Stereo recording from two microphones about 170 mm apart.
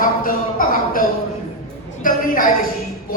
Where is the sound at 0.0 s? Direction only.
55° left (ahead or behind).